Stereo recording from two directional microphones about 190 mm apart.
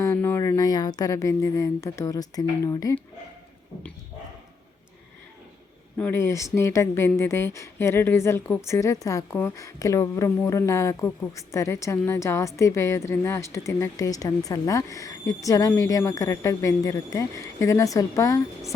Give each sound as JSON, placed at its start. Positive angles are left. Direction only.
{"t": 0.0, "sound": "speech", "side_deg": 15}
{"t": 6.0, "sound": "a woman's voice", "side_deg": 10}